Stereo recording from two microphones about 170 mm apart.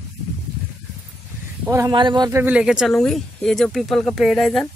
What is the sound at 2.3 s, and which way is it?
Speech, 10° right (ahead or behind).